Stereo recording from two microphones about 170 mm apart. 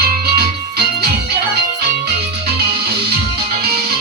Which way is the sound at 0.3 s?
70° right (ahead or behind).